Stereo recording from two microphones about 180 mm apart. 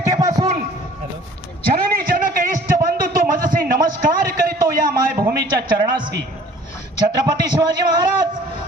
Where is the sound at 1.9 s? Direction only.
50° right (ahead or behind).